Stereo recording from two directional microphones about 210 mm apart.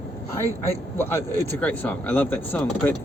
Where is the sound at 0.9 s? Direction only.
10° left (ahead or behind).